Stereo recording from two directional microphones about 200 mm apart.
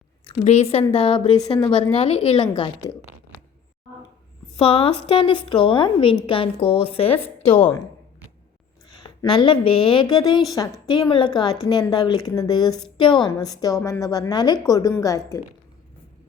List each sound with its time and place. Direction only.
0.4 s a woman's voice: 30° left (ahead or behind)
4.5 s a woman's voice: 30° left (ahead or behind)
7.2 s a woman's voice: 10° left (ahead or behind)
9.3 s a woman's voice: 25° left (ahead or behind)